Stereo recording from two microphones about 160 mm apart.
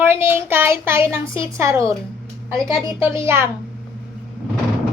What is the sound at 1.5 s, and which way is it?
A child's voice, 15° right (ahead or behind).